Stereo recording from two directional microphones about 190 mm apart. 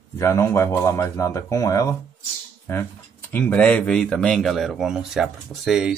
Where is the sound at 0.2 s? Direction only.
15° left (ahead or behind).